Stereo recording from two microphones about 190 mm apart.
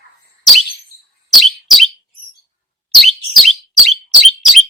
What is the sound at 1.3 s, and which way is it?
Bird, centre (ahead or behind).